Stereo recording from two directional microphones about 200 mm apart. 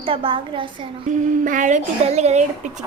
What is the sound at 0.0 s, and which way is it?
Speech, 25° right (ahead or behind).